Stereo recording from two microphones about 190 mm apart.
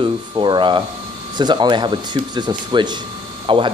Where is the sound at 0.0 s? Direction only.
25° right (ahead or behind).